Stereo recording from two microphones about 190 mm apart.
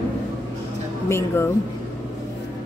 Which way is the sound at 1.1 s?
15° left (ahead or behind).